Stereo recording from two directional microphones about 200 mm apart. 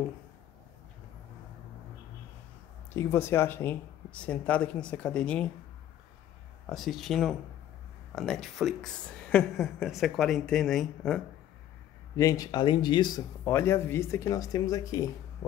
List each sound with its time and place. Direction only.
2.9 s speech: 10° left (ahead or behind)
6.7 s speech: centre (ahead or behind)
12.2 s speech: 15° left (ahead or behind)